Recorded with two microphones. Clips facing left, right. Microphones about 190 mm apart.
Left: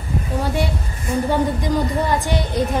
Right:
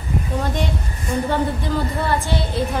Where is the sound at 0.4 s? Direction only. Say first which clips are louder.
Left 4 dB; 10° left (ahead or behind).